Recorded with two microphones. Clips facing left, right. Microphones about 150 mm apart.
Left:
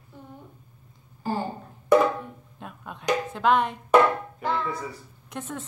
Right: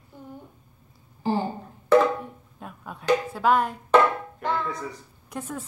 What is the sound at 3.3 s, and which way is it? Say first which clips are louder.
Speech: left 4 dB; 5° right (ahead or behind).